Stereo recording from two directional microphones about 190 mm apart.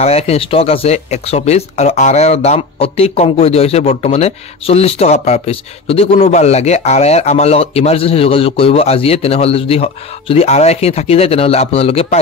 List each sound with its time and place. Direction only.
0.0 s speech: 35° left (ahead or behind)